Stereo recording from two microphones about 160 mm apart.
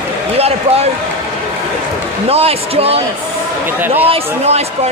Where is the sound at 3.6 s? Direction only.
15° right (ahead or behind).